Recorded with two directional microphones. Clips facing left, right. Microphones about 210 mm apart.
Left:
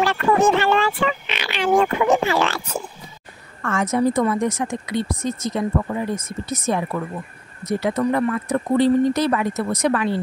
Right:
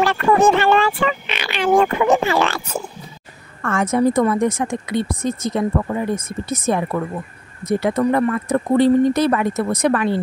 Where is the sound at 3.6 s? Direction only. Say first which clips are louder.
Right 2 dB; 55° right (ahead or behind).